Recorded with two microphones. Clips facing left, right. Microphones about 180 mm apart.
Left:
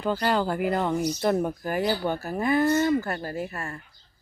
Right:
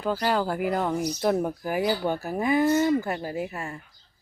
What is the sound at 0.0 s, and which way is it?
Speech, 5° right (ahead or behind).